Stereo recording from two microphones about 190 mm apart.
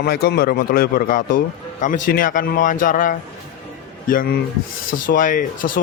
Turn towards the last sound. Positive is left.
turn(degrees=45)  # may be behind; listen again after turning